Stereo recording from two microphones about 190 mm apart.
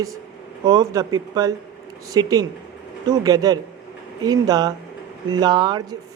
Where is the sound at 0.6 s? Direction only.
20° right (ahead or behind).